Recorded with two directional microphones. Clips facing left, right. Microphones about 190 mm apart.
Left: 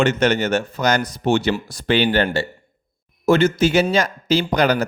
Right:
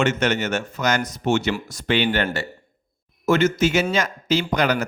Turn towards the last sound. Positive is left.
turn(degrees=35)  # may be behind; listen again after turning